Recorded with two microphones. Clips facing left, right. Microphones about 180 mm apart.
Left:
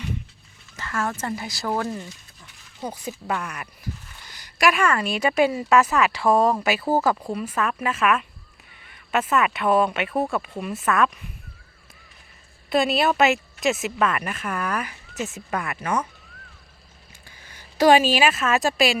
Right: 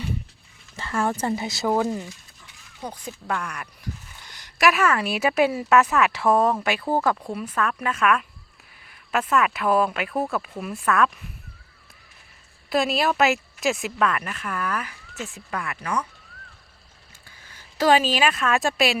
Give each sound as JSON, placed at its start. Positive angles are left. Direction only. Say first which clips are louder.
{"t": 0.8, "sound": "a sound", "louder": "right 3 dB", "side_deg": -30}
{"t": 1.2, "sound": "speech", "louder": "right 4 dB", "side_deg": -25}
{"t": 2.8, "sound": "a woman's voice", "louder": "left 3 dB", "side_deg": 5}
{"t": 12.7, "sound": "a woman's voice", "louder": "left 2 dB", "side_deg": 0}
{"t": 14.3, "sound": "speech", "louder": "left 2 dB", "side_deg": 20}
{"t": 17.7, "sound": "a woman's voice", "louder": "left 3 dB", "side_deg": 15}